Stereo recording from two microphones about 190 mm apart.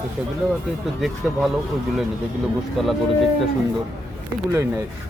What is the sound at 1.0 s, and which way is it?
Speech, centre (ahead or behind).